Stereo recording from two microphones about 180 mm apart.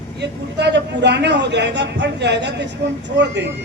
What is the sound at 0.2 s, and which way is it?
A woman's voice, 70° right (ahead or behind).